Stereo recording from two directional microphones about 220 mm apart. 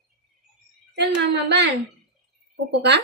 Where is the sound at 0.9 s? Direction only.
50° right (ahead or behind).